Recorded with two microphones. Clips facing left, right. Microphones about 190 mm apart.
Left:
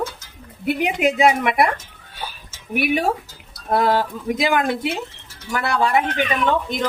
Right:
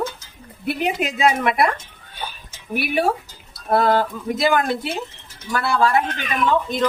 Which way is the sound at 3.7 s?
15° left (ahead or behind).